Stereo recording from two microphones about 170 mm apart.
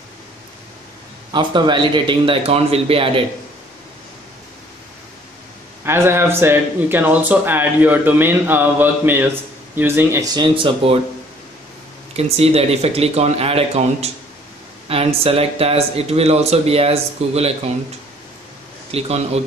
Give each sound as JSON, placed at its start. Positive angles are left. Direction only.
{"t": 1.3, "sound": "speech", "side_deg": -30}
{"t": 5.9, "sound": "speech", "side_deg": -15}
{"t": 12.2, "sound": "speech", "side_deg": -35}
{"t": 18.9, "sound": "speech", "side_deg": -35}